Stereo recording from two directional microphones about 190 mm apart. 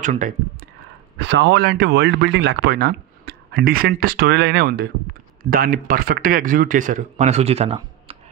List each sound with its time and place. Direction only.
0.0 s speech: 40° right (ahead or behind)
1.1 s speech: 70° right (ahead or behind); by 8.2 s 30° right (ahead or behind)